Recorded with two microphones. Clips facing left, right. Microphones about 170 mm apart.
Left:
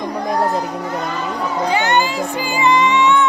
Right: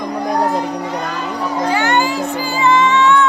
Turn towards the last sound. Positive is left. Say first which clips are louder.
# right 1 dB
turn(degrees=15)  # may be behind; listen again after turning